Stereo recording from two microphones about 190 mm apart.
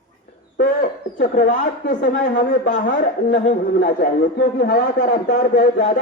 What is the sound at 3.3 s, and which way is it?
A man's voice, 50° left (ahead or behind).